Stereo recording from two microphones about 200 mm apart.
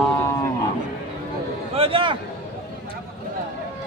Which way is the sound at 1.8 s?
25° right (ahead or behind).